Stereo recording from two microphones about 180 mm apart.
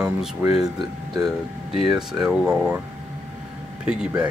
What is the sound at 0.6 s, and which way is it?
Speech, 20° right (ahead or behind).